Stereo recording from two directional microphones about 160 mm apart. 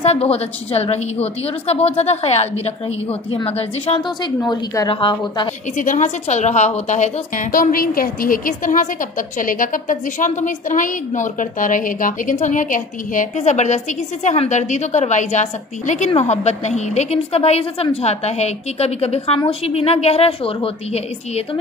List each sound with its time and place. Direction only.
0.0 s a woman's voice: 40° left (ahead or behind)
4.4 s a woman's voice: 20° left (ahead or behind)
5.8 s a woman's voice: 50° left (ahead or behind)